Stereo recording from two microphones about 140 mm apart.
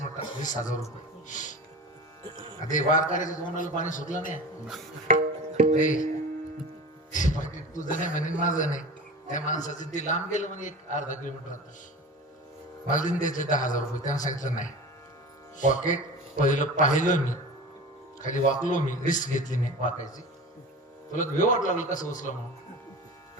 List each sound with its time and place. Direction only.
0.4 s a man's voice: 65° left (ahead or behind)
2.6 s a man's voice: 65° left (ahead or behind)
5.1 s tabla: 60° right (ahead or behind)
5.8 s a man's voice: 65° left (ahead or behind)
7.1 s a man's voice: 65° left (ahead or behind)
12.9 s a man's voice: 65° left (ahead or behind)
18.6 s a man's voice: 65° left (ahead or behind)